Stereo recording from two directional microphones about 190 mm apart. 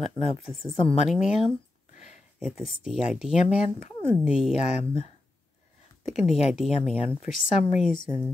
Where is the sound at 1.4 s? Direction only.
35° left (ahead or behind).